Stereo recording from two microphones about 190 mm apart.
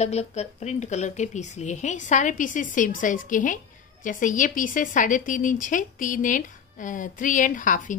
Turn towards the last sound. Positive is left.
turn(degrees=45)  # may be behind; listen again after turning